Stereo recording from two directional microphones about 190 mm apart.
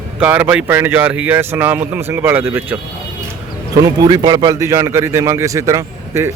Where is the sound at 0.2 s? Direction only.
10° right (ahead or behind).